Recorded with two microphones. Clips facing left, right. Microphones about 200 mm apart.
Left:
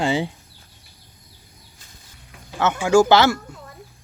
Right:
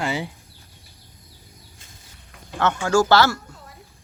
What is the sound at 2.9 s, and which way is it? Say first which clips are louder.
Speech: left 4 dB; 20° left (ahead or behind).